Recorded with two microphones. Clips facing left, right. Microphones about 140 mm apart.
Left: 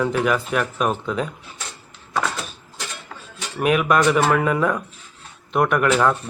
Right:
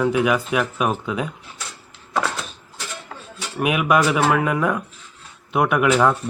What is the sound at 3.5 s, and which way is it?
A man's voice, 5° right (ahead or behind).